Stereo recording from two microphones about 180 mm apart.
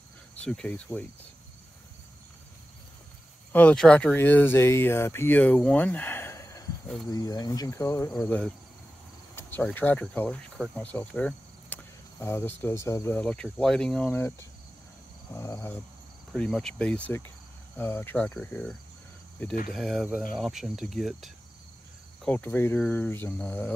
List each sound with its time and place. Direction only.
0.4 s speech: 5° left (ahead or behind)
3.5 s speech: 5° left (ahead or behind)
9.3 s cricket: 10° left (ahead or behind)
9.8 s speech: 10° left (ahead or behind)
15.3 s speech: 15° left (ahead or behind)
16.3 s speech: centre (ahead or behind)